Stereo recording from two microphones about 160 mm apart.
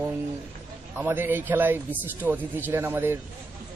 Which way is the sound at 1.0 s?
15° right (ahead or behind).